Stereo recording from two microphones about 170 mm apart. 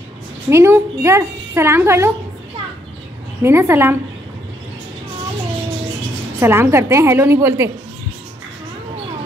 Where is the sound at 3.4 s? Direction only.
15° right (ahead or behind).